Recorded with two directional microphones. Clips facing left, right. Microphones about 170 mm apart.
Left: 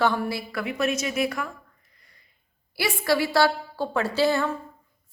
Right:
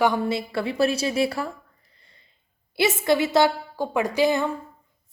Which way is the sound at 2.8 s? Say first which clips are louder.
Right 3 dB; 20° right (ahead or behind).